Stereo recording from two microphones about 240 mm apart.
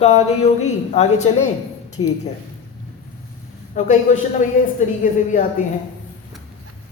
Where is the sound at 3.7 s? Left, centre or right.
Left.